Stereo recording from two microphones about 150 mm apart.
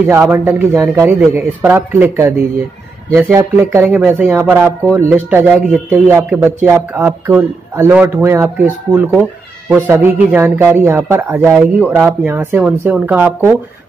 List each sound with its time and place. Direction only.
0.1 s a man's voice: 15° right (ahead or behind)